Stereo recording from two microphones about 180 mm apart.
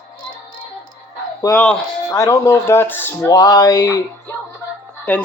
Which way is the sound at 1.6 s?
10° left (ahead or behind).